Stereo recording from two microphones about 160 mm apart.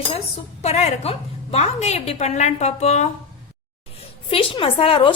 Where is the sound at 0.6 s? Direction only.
40° left (ahead or behind).